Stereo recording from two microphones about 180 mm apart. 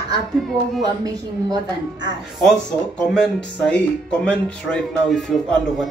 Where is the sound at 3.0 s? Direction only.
5° left (ahead or behind).